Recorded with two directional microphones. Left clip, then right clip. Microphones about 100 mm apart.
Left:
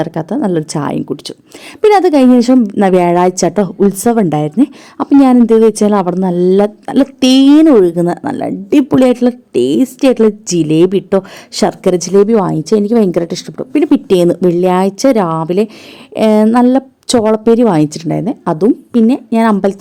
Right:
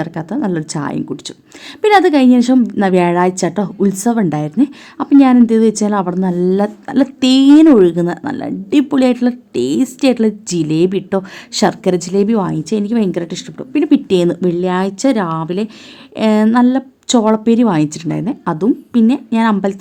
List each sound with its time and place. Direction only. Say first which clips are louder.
0.0 s a woman's voice: left 4 dB; 35° left (ahead or behind)
4.9 s a woman's voice: left 2 dB; 50° left (ahead or behind)
5.4 s a woman's voice: left 5 dB; 35° left (ahead or behind)